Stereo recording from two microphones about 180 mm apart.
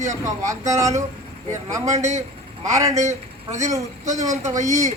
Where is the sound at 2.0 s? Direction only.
40° right (ahead or behind).